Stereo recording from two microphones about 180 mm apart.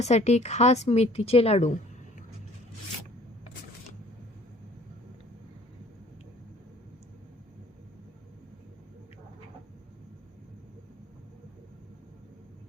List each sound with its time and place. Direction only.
0.0 s a woman's voice: 40° left (ahead or behind)